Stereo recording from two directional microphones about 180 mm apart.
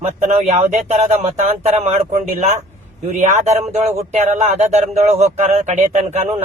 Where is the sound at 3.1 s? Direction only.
40° right (ahead or behind).